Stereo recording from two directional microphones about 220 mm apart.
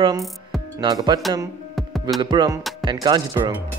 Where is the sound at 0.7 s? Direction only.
20° right (ahead or behind).